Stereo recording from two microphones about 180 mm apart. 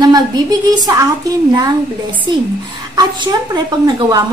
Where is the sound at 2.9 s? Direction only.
20° right (ahead or behind).